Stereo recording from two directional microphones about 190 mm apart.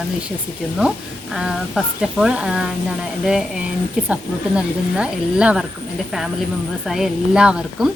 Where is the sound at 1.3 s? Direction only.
5° right (ahead or behind).